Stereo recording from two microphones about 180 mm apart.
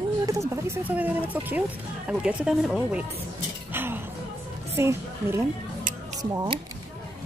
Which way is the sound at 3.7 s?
10° right (ahead or behind).